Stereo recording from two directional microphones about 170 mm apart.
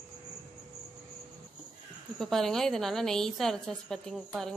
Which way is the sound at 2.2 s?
Centre (ahead or behind).